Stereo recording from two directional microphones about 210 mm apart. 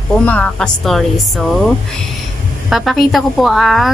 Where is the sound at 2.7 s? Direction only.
Centre (ahead or behind).